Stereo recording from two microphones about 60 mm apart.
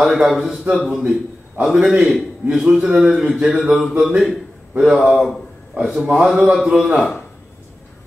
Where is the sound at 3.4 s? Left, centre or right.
Centre.